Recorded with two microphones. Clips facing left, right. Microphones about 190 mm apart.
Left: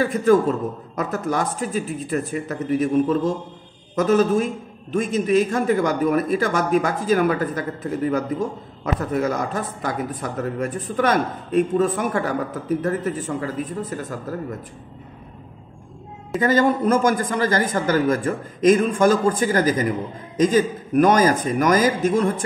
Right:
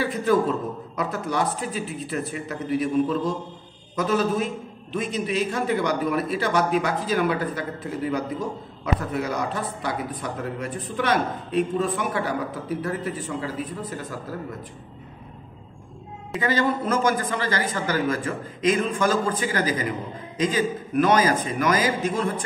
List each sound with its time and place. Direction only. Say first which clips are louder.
0.0 s a man's voice: left 5 dB; 45° left (ahead or behind)
16.3 s a man's voice: left 5 dB; 45° left (ahead or behind)